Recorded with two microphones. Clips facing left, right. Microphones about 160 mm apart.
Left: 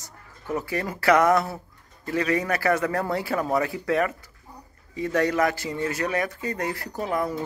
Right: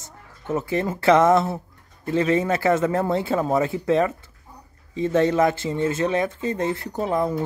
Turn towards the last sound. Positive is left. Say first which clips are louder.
# right 4 dB
turn(degrees=-25)  # may be behind; listen again after turning